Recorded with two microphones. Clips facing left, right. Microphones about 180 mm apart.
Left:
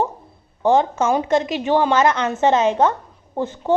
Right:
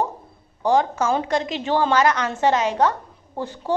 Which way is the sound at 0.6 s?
20° left (ahead or behind).